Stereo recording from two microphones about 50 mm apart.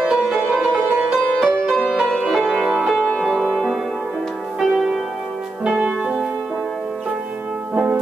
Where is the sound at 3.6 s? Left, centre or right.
Centre.